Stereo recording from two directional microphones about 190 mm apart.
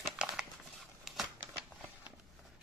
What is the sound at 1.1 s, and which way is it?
Shuffling cards, centre (ahead or behind).